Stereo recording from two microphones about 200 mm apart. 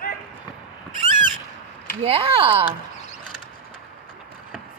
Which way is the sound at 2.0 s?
30° right (ahead or behind).